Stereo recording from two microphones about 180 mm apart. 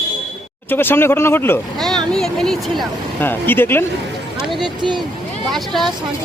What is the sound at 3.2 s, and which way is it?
Speech, 10° left (ahead or behind).